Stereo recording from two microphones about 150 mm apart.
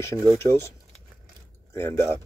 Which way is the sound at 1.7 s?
15° left (ahead or behind).